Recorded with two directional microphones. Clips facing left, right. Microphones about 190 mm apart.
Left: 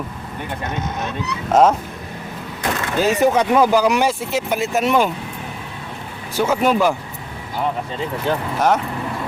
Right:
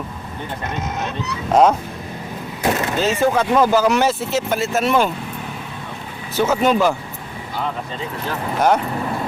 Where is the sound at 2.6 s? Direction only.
25° right (ahead or behind).